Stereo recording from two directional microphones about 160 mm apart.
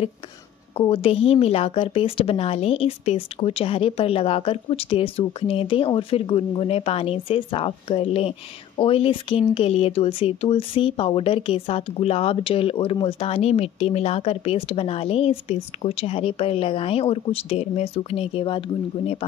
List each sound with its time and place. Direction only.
0.7 s a woman's voice: 35° left (ahead or behind)